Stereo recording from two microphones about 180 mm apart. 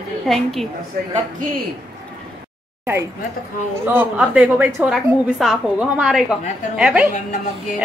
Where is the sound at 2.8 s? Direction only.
15° right (ahead or behind).